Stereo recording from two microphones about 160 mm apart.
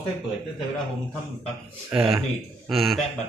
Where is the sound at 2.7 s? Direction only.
Centre (ahead or behind).